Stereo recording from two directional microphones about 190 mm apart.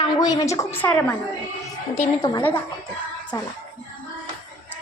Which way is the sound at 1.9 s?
20° left (ahead or behind).